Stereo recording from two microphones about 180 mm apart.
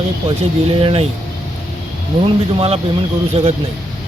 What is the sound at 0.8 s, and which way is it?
Speech, 30° right (ahead or behind).